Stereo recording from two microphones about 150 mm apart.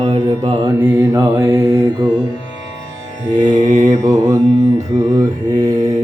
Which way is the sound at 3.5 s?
55° right (ahead or behind).